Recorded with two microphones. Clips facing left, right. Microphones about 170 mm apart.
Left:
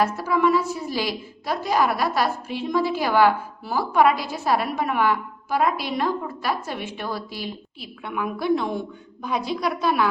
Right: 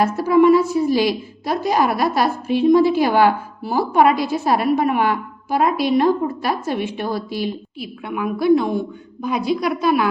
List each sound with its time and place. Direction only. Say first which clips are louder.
0.0 s a woman's voice: right 7 dB; 15° right (ahead or behind)